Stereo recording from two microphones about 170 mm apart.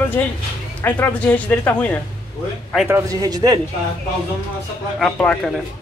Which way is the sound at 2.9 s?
15° right (ahead or behind).